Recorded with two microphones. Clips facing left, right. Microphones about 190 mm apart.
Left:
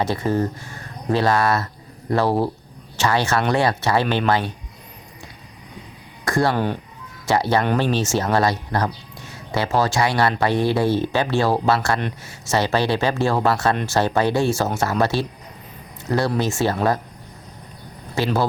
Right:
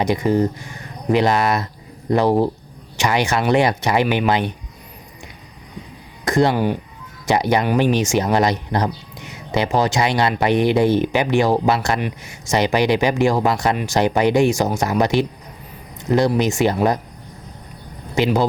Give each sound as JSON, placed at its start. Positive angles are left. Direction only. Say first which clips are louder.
{"t": 0.0, "sound": "speech", "louder": "right 4 dB", "side_deg": -15}
{"t": 6.2, "sound": "speech", "louder": "right 3 dB", "side_deg": -20}
{"t": 18.1, "sound": "speech", "louder": "right 3 dB", "side_deg": -15}